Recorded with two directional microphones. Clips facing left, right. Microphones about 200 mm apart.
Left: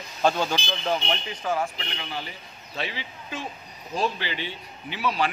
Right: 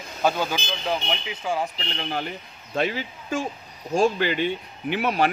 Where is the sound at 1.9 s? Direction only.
50° right (ahead or behind).